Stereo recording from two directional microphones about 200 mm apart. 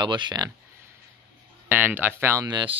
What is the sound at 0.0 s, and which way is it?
Speech, 20° right (ahead or behind).